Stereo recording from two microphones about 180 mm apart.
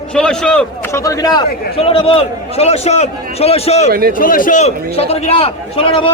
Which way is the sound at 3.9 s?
55° right (ahead or behind).